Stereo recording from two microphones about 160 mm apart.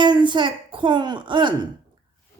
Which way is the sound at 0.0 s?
30° right (ahead or behind).